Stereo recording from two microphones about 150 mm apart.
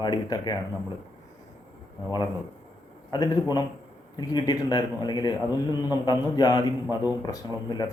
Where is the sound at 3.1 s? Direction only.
25° left (ahead or behind).